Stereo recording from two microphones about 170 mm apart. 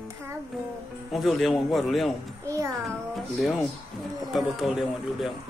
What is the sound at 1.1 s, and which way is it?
Speech, centre (ahead or behind).